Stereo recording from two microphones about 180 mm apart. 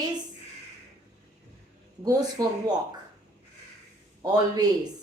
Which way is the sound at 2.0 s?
20° right (ahead or behind).